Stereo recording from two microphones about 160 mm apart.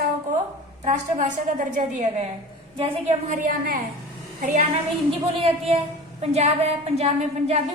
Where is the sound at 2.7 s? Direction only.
35° right (ahead or behind).